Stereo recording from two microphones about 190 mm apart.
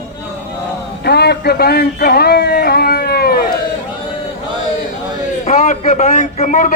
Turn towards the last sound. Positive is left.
turn(degrees=45)  # may be behind; listen again after turning